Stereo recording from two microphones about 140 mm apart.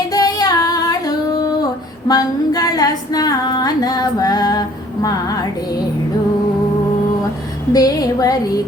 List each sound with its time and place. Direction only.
0.1 s singing: 25° left (ahead or behind)
2.0 s female singing: 25° left (ahead or behind)
7.7 s female singing: 25° left (ahead or behind)